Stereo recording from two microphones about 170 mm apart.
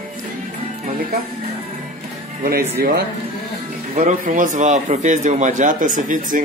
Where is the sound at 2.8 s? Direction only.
60° right (ahead or behind).